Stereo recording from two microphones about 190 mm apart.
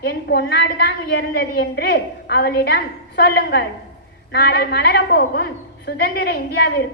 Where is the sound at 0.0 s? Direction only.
60° left (ahead or behind).